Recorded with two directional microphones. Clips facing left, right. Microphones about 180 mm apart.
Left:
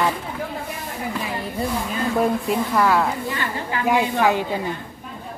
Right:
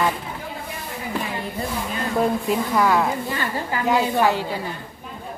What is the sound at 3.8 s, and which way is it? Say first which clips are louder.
Speech: even; 15° left (ahead or behind).